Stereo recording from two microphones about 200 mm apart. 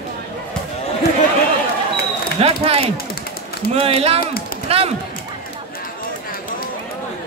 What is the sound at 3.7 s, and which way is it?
Speech, 30° right (ahead or behind).